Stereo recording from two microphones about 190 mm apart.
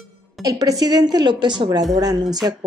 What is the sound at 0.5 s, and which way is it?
A woman's voice, 20° right (ahead or behind).